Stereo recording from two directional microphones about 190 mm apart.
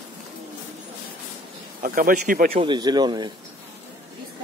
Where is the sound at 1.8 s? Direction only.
45° right (ahead or behind).